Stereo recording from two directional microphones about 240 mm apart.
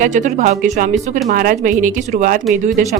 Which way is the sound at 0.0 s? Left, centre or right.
Right.